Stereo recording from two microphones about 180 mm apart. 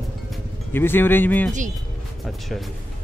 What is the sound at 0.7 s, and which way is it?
Speech, 10° left (ahead or behind).